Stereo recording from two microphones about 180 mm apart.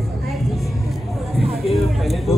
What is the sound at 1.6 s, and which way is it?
Music, centre (ahead or behind).